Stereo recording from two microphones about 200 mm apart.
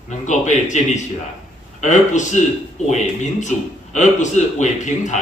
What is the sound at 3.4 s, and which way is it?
A man's voice, 35° left (ahead or behind).